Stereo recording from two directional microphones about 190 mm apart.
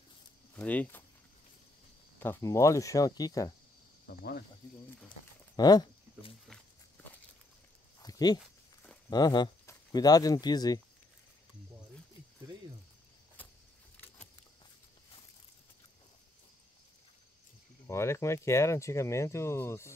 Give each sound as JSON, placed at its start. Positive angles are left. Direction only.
{"t": 0.6, "sound": "speech", "side_deg": 10}
{"t": 2.1, "sound": "speech", "side_deg": 10}
{"t": 4.1, "sound": "speech", "side_deg": 55}
{"t": 5.6, "sound": "speech", "side_deg": 20}
{"t": 8.0, "sound": "a sound", "side_deg": 20}
{"t": 9.1, "sound": "speech", "side_deg": 20}
{"t": 17.8, "sound": "speech", "side_deg": 15}